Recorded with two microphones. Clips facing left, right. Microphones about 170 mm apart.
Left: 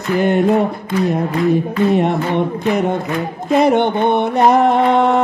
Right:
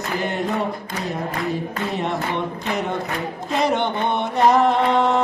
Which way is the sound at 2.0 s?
55° left (ahead or behind).